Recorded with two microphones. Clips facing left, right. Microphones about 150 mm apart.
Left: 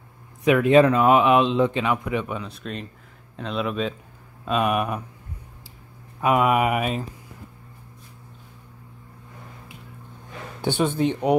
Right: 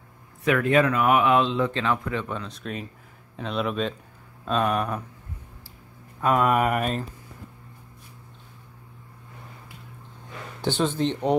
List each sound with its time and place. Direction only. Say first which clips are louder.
0.5 s speech: left 5 dB; 20° left (ahead or behind)
6.2 s speech: left 2 dB; 10° left (ahead or behind)
10.6 s speech: left 2 dB; 15° left (ahead or behind)